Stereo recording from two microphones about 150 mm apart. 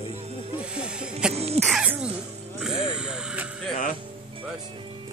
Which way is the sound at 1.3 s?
45° right (ahead or behind).